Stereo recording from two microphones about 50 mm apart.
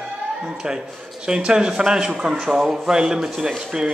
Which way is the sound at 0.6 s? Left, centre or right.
Centre.